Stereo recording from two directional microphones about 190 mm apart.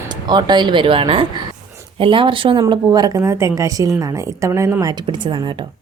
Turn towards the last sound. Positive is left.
turn(degrees=-15)  # may be behind; listen again after turning